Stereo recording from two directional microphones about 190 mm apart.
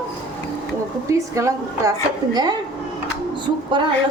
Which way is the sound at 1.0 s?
15° right (ahead or behind).